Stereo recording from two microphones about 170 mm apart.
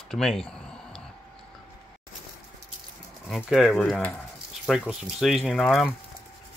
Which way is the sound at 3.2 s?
Centre (ahead or behind).